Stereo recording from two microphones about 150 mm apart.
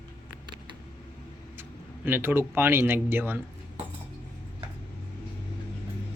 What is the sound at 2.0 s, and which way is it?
Speech, 15° right (ahead or behind).